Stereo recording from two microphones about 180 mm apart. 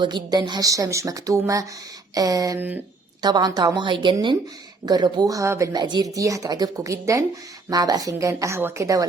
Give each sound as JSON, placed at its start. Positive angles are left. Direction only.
{"t": 0.0, "sound": "a woman's voice", "side_deg": -25}
{"t": 3.2, "sound": "a woman's voice", "side_deg": -25}